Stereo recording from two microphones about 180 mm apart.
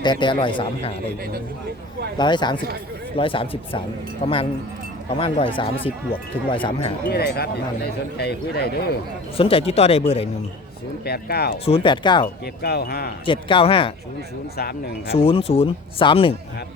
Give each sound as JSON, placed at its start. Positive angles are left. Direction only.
{"t": 0.0, "sound": "speech", "side_deg": 25}
{"t": 2.1, "sound": "speech", "side_deg": 25}
{"t": 7.1, "sound": "speech", "side_deg": 60}
{"t": 9.4, "sound": "speech", "side_deg": 30}
{"t": 11.0, "sound": "speech", "side_deg": 60}
{"t": 11.6, "sound": "speech", "side_deg": 30}
{"t": 12.6, "sound": "speech", "side_deg": 60}
{"t": 13.2, "sound": "speech", "side_deg": 30}
{"t": 14.5, "sound": "speech", "side_deg": 60}
{"t": 15.1, "sound": "speech", "side_deg": 30}